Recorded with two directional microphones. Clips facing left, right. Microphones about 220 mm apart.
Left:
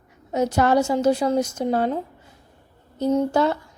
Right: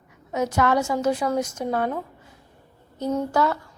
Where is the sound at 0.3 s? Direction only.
30° left (ahead or behind).